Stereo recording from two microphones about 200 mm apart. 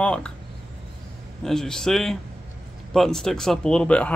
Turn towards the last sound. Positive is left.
turn(degrees=5)  # may be behind; listen again after turning